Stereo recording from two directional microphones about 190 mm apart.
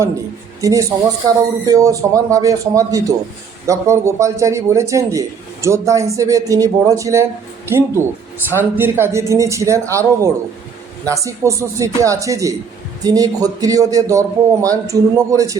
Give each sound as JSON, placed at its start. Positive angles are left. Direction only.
{"t": 0.6, "sound": "a man's voice", "side_deg": -15}